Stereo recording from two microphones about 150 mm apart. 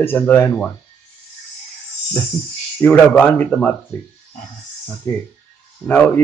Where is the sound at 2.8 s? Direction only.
10° left (ahead or behind).